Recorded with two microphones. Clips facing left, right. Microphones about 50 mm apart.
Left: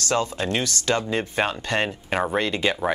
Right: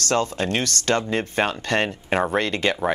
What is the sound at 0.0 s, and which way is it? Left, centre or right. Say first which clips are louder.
Speech: right 2 dB; right.